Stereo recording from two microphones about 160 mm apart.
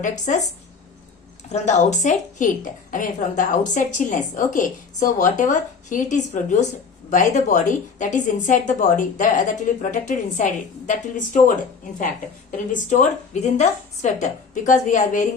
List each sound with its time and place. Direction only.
0.0 s a woman's voice: 50° left (ahead or behind)
1.5 s a woman's voice: 45° left (ahead or behind)
12.5 s a woman's voice: 50° left (ahead or behind)